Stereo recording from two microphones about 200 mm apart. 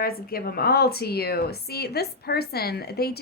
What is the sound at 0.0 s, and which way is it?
A woman's voice, 50° left (ahead or behind).